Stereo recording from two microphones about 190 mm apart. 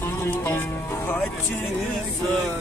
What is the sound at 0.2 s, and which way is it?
Music, 15° left (ahead or behind).